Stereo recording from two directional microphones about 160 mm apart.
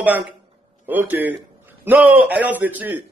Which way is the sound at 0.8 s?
10° right (ahead or behind).